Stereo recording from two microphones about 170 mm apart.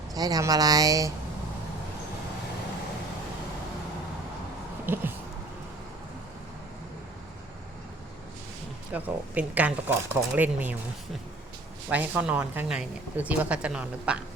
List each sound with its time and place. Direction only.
0.1 s speech: 20° right (ahead or behind)
4.9 s speech: 10° right (ahead or behind)
8.9 s speech: 10° right (ahead or behind)
11.9 s speech: 10° right (ahead or behind)